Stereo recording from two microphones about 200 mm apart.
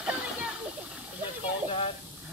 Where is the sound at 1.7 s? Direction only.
25° left (ahead or behind).